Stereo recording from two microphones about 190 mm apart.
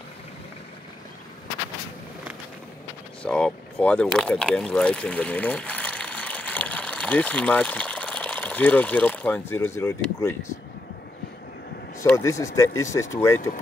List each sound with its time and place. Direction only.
3.2 s speech: 5° left (ahead or behind)
12.0 s speech: 15° left (ahead or behind)